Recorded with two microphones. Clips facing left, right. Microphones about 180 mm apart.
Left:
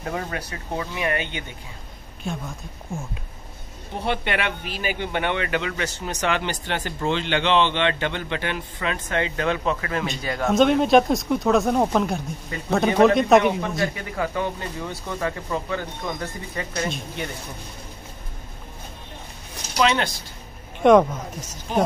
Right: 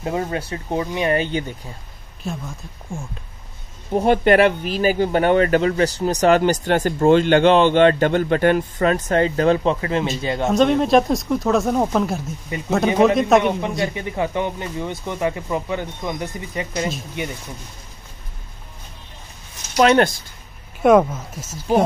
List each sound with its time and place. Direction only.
0.0 s speech: 25° right (ahead or behind)
2.2 s speech: centre (ahead or behind)
4.0 s speech: 45° right (ahead or behind); by 10.5 s 25° right (ahead or behind)
10.5 s speech: centre (ahead or behind)
12.4 s speech: 15° right (ahead or behind)
13.0 s speech: centre (ahead or behind)
13.6 s speech: 20° right (ahead or behind)
19.8 s speech: 50° right (ahead or behind)
20.8 s speech: 5° right (ahead or behind)